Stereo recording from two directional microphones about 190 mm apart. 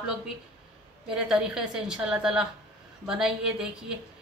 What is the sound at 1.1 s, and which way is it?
A woman's voice, 5° right (ahead or behind).